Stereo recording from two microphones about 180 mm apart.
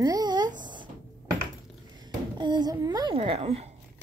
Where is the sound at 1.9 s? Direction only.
25° right (ahead or behind).